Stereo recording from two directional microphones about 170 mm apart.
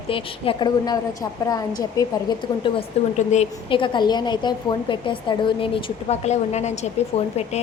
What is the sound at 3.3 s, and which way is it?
Speech, 45° left (ahead or behind).